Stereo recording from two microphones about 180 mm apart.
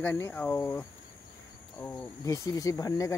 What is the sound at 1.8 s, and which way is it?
Cricket, 15° left (ahead or behind).